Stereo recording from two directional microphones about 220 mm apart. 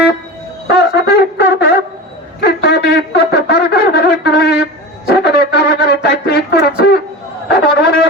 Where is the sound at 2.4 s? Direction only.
45° left (ahead or behind).